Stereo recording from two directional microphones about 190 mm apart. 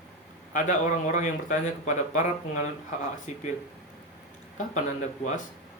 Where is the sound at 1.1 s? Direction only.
40° left (ahead or behind).